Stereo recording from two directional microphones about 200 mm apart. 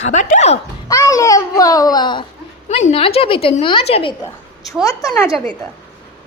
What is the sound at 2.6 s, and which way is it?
A woman's voice, 30° left (ahead or behind).